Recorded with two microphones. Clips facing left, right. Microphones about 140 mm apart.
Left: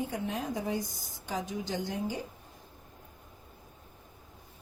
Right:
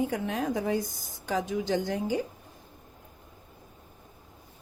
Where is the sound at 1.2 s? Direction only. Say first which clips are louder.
Right 6 dB; 90° right.